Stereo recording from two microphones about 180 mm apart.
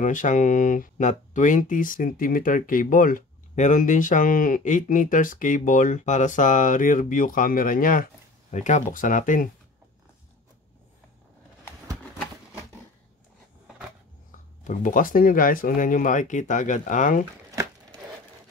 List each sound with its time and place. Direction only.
0.0 s speech: 45° left (ahead or behind)
14.6 s speech: 45° left (ahead or behind)